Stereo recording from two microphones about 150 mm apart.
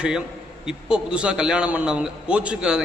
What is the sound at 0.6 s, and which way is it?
A man's voice, 5° right (ahead or behind).